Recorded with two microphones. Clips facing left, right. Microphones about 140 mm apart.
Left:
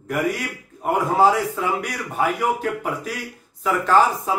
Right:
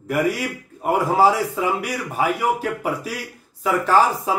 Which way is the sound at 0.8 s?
5° right (ahead or behind).